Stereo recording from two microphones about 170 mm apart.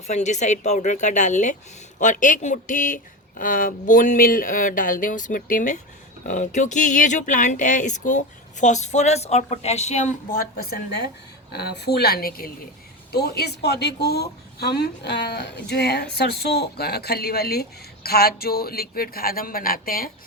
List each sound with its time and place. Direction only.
0.1 s speech: 45° left (ahead or behind)
10.2 s a woman's voice: 60° left (ahead or behind)
11.5 s speech: 75° left (ahead or behind); by 20.1 s 60° left (ahead or behind)